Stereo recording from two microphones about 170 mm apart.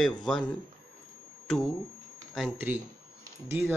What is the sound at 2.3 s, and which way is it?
Speech, 5° right (ahead or behind).